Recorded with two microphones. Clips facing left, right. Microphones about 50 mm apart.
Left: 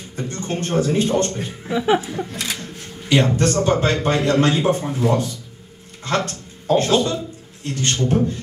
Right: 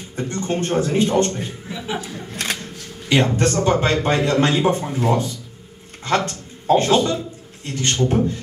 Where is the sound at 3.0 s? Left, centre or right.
Right.